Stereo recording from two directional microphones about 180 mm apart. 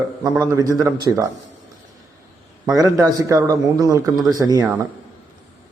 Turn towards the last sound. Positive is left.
turn(degrees=-20)  # may be behind; listen again after turning